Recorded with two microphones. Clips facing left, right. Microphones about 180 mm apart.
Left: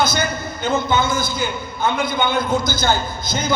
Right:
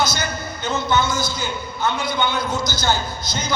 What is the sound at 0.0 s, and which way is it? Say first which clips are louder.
A man's voice: left 3 dB; 55° left (ahead or behind).